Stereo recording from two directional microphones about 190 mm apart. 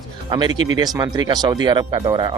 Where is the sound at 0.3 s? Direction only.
25° right (ahead or behind).